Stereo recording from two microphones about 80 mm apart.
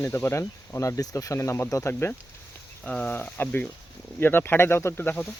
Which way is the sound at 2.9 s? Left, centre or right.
Centre.